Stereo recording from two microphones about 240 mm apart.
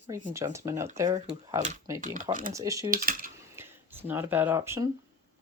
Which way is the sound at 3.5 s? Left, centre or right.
Centre.